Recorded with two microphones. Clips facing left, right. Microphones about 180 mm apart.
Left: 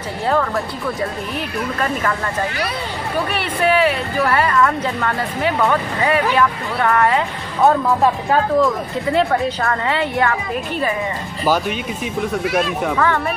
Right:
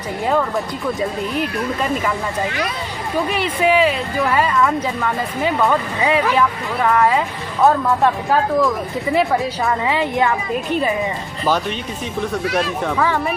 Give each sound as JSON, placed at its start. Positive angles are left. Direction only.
{"t": 3.6, "sound": "speech", "side_deg": -15}
{"t": 4.6, "sound": "speech", "side_deg": -5}
{"t": 5.7, "sound": "speech", "side_deg": -15}
{"t": 9.7, "sound": "speech", "side_deg": -15}
{"t": 12.3, "sound": "speech", "side_deg": 0}